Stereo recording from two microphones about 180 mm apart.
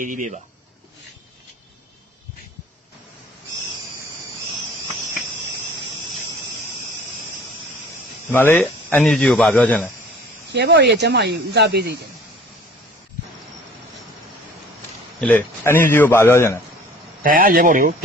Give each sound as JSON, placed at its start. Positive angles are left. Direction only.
{"t": 0.0, "sound": "speech", "side_deg": -45}
{"t": 8.3, "sound": "a man's voice", "side_deg": 10}
{"t": 10.5, "sound": "speech", "side_deg": -70}
{"t": 15.2, "sound": "a man's voice", "side_deg": 10}
{"t": 17.2, "sound": "speech", "side_deg": -50}